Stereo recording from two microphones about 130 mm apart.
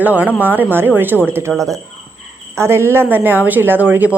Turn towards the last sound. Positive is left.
turn(degrees=-15)  # may be behind; listen again after turning